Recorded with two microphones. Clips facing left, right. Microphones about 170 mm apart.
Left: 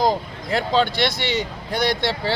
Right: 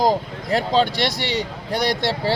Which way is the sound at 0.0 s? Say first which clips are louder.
Right 1 dB; 35° right (ahead or behind).